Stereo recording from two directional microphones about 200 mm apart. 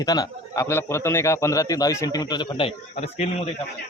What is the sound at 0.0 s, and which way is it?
A man's voice, 20° left (ahead or behind).